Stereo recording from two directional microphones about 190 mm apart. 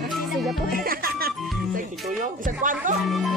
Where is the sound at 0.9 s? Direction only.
50° right (ahead or behind).